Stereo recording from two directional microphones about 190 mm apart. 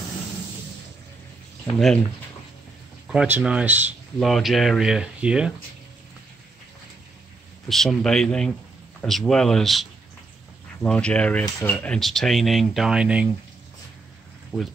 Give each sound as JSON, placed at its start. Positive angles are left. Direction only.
{"t": 3.1, "sound": "speech", "side_deg": -5}
{"t": 7.6, "sound": "speech", "side_deg": 0}
{"t": 14.5, "sound": "speech", "side_deg": -5}